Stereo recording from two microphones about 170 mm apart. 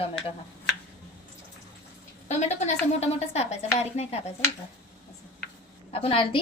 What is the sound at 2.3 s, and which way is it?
A woman's voice, 40° left (ahead or behind).